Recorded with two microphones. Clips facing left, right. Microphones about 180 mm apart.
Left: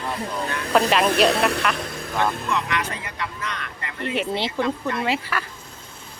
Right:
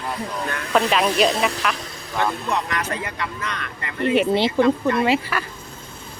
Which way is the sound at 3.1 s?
65° right (ahead or behind).